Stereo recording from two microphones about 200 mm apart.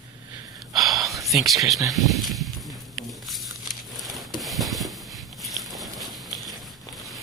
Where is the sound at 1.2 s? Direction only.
Centre (ahead or behind).